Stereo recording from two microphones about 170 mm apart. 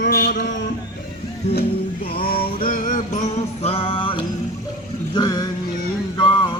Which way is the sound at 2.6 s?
50° left (ahead or behind).